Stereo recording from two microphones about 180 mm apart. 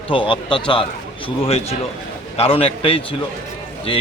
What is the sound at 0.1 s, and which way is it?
Speech, 30° left (ahead or behind).